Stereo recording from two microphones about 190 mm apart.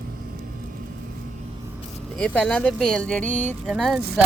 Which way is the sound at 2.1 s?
5° left (ahead or behind).